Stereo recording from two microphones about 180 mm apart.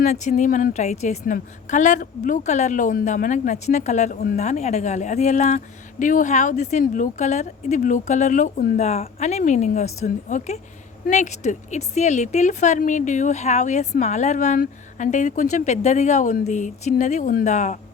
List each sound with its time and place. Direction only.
0.0 s a woman's voice: 40° left (ahead or behind)
8.8 s speech: 35° left (ahead or behind)